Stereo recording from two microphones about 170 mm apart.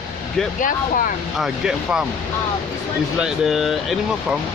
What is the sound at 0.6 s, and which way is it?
Speech, 50° left (ahead or behind).